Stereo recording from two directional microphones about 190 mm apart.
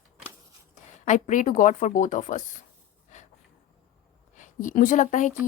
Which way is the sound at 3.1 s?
40° left (ahead or behind).